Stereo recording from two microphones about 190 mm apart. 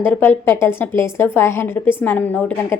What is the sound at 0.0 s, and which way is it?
A woman's voice, 10° left (ahead or behind).